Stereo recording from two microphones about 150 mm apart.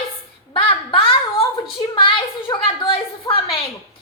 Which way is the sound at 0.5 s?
35° left (ahead or behind).